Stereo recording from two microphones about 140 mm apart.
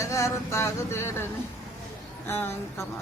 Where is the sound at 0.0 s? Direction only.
20° left (ahead or behind).